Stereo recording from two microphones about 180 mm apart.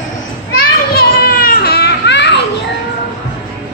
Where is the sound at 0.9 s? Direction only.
55° left (ahead or behind).